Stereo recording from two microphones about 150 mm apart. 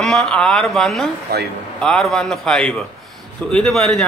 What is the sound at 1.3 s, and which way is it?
Speech, 90° right.